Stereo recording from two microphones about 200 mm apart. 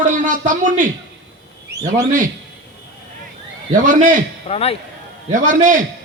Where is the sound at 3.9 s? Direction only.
40° right (ahead or behind).